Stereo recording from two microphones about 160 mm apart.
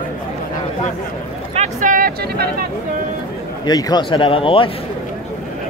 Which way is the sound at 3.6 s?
25° left (ahead or behind).